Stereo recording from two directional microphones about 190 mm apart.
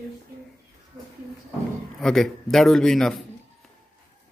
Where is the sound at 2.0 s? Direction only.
Centre (ahead or behind).